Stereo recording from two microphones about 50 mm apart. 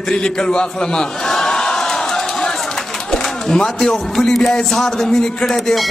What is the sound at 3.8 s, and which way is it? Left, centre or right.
A man's voice, centre.